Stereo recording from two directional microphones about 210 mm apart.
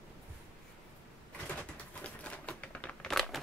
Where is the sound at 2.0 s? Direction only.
5° left (ahead or behind).